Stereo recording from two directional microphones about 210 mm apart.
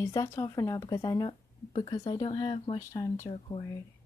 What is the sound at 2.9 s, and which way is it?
Speech, 15° left (ahead or behind).